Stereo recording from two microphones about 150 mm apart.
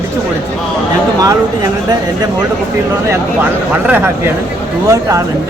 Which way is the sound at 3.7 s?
10° right (ahead or behind).